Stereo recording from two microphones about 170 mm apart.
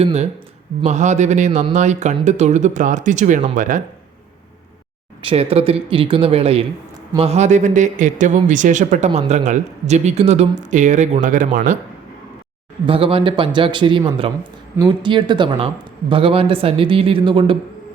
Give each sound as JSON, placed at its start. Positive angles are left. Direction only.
{"t": 0.0, "sound": "a man's voice", "side_deg": -40}
{"t": 5.2, "sound": "a man's voice", "side_deg": -35}
{"t": 12.8, "sound": "a man's voice", "side_deg": -30}